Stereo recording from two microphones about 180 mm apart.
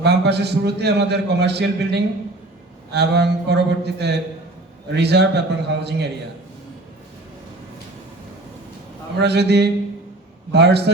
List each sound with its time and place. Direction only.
0.0 s a man's voice: 65° right (ahead or behind)
9.2 s a man's voice: 65° right (ahead or behind)